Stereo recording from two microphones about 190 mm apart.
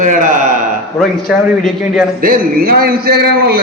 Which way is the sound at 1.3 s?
5° right (ahead or behind).